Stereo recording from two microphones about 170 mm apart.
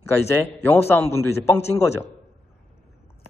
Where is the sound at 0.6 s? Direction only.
15° left (ahead or behind).